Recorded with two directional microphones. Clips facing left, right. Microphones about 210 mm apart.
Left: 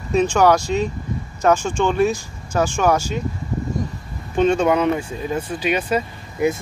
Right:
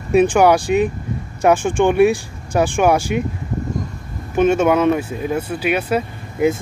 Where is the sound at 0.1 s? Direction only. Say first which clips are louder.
Right 3 dB; 10° right (ahead or behind).